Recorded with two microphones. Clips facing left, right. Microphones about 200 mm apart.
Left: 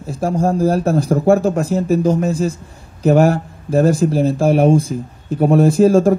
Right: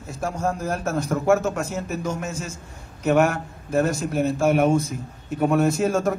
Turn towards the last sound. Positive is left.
turn(degrees=30)  # may be behind; listen again after turning